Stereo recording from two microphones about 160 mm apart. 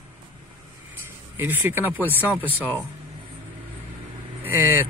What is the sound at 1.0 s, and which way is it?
Speech, 10° right (ahead or behind).